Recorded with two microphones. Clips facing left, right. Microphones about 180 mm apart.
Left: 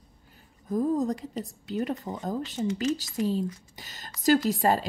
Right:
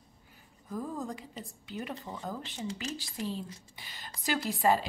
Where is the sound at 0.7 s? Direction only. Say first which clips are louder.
Left 11 dB; 40° left (ahead or behind).